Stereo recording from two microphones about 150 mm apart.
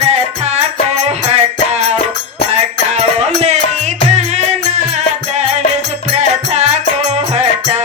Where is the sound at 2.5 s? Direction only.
45° right (ahead or behind).